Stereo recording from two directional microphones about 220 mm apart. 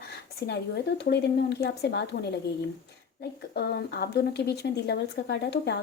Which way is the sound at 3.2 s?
45° left (ahead or behind).